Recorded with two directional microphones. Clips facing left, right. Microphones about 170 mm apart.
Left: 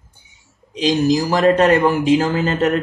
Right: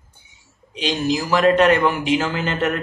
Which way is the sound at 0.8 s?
40° left (ahead or behind).